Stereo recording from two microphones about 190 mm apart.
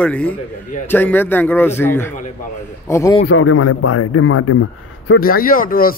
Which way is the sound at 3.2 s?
90° left.